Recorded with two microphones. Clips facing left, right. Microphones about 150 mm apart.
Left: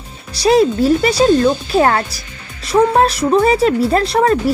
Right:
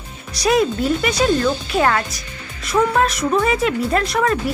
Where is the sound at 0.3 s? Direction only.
30° left (ahead or behind).